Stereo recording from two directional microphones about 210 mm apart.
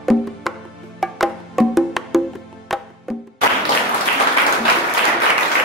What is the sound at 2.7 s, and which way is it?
Music, centre (ahead or behind).